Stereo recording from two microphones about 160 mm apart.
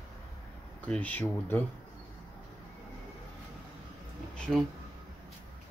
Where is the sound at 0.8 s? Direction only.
10° left (ahead or behind).